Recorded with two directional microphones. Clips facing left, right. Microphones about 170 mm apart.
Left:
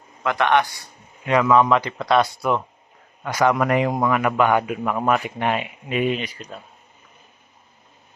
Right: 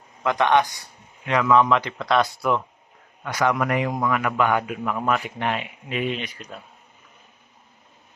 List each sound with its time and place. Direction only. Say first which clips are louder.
0.3 s a man's voice: even; 15° right (ahead or behind)
1.3 s speech: left 2 dB; 10° left (ahead or behind)
3.3 s speech: left 3 dB; 35° left (ahead or behind)
4.2 s a man's voice: left 4 dB; 25° left (ahead or behind)
4.8 s speech: left 3 dB; 40° left (ahead or behind)
5.4 s speech: left 3 dB; 15° left (ahead or behind)